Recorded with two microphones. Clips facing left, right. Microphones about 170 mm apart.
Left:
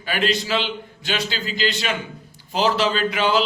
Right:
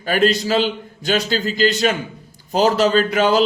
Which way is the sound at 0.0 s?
40° right (ahead or behind).